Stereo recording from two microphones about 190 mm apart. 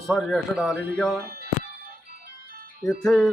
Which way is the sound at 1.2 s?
55° right (ahead or behind).